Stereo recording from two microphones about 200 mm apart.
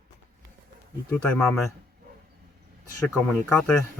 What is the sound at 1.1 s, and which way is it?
Speech, 5° left (ahead or behind).